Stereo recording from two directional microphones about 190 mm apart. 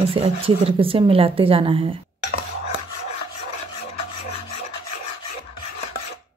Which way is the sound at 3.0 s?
35° left (ahead or behind).